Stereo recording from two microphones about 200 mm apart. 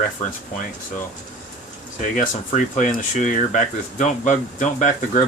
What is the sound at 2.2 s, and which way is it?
Speech, 40° left (ahead or behind).